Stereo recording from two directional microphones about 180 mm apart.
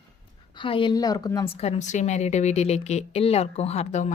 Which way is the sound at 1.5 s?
35° left (ahead or behind).